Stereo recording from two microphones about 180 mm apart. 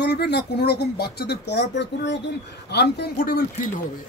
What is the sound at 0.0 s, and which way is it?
A man's voice, 65° left (ahead or behind).